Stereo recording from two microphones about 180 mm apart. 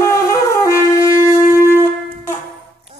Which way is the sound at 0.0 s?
15° left (ahead or behind).